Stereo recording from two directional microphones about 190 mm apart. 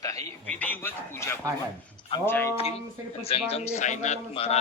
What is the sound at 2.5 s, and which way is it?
A man's voice, 35° left (ahead or behind).